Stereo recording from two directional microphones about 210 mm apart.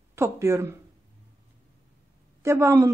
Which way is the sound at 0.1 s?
15° right (ahead or behind).